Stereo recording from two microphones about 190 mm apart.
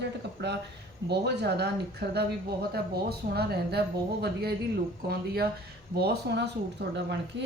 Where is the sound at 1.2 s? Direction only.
60° right (ahead or behind).